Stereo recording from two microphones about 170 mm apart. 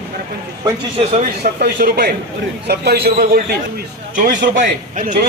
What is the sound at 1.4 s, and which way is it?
A man's voice, 65° right (ahead or behind).